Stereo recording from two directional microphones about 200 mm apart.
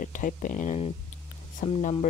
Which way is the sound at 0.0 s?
40° left (ahead or behind).